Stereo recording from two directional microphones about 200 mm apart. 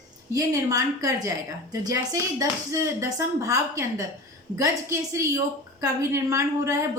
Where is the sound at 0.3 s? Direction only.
15° right (ahead or behind).